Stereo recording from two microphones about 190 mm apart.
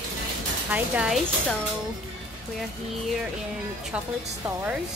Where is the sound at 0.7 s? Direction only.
5° right (ahead or behind).